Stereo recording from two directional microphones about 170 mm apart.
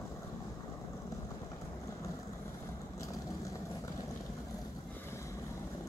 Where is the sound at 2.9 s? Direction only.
20° left (ahead or behind).